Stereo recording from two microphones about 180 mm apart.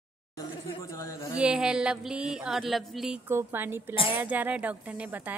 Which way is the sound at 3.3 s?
10° right (ahead or behind).